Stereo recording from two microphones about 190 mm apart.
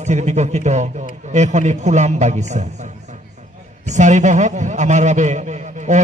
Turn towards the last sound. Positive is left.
turn(degrees=-40)  # may be behind; listen again after turning